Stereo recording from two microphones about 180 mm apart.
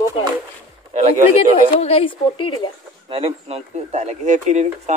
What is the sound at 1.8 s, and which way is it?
Speech, 35° left (ahead or behind).